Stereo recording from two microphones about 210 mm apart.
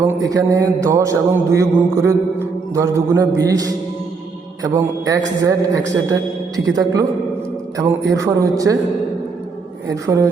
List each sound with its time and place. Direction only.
0.1 s a man's voice: 15° right (ahead or behind)
8.1 s a man's voice: 15° right (ahead or behind)
9.9 s a man's voice: 15° right (ahead or behind)